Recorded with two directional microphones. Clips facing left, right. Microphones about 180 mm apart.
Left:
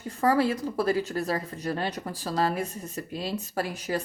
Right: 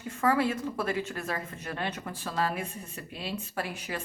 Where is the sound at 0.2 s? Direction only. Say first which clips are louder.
Left 3 dB; 35° left (ahead or behind).